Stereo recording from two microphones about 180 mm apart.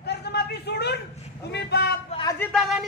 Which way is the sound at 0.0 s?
65° left (ahead or behind).